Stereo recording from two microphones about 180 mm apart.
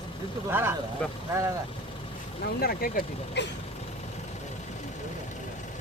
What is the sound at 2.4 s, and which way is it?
Speech, 60° left (ahead or behind).